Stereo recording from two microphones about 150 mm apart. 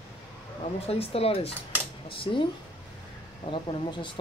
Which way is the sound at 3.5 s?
35° left (ahead or behind).